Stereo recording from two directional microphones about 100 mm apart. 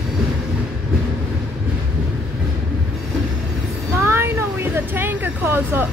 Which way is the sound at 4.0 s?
25° right (ahead or behind).